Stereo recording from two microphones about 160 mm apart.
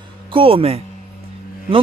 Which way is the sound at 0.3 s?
35° right (ahead or behind).